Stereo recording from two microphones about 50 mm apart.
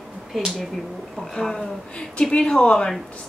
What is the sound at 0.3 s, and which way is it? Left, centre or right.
Speech, centre.